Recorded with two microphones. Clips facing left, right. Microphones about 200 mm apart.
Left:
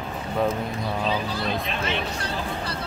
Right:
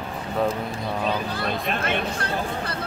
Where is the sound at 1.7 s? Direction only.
55° right (ahead or behind).